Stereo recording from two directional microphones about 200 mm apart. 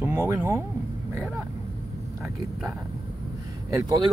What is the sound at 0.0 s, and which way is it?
Speech, 10° right (ahead or behind).